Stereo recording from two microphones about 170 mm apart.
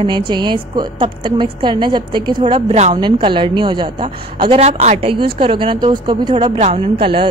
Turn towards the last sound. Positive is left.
turn(degrees=-35)  # may be behind; listen again after turning